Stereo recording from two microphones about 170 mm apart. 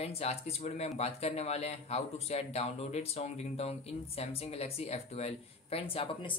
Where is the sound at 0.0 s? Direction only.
35° left (ahead or behind).